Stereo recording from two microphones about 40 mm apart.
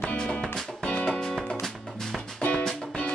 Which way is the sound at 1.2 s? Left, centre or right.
Centre.